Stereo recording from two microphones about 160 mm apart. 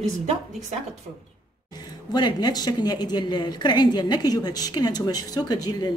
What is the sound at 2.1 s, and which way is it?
A woman's voice, 25° left (ahead or behind).